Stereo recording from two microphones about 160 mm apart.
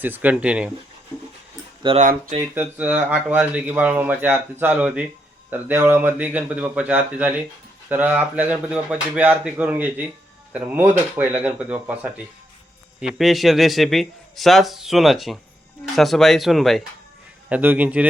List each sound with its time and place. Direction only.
0.0 s speech: 10° right (ahead or behind)
1.8 s speech: 30° right (ahead or behind)
2.4 s a man's voice: 10° right (ahead or behind)
17.5 s speech: 10° right (ahead or behind)